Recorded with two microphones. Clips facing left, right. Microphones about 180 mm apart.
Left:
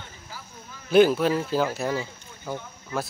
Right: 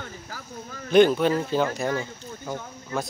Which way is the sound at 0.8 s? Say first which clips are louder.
Right 1 dB; 5° left (ahead or behind).